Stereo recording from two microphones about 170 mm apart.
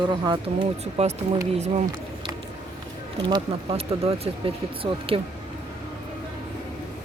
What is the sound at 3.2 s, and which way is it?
Speech, 25° right (ahead or behind).